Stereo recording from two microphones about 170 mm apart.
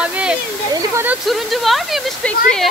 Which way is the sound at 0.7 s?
15° right (ahead or behind).